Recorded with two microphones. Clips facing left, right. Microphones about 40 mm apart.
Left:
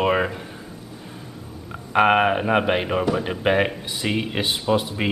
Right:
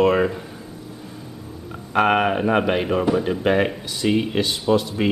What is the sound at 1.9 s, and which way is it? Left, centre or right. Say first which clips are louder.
Speech: left 1 dB; centre.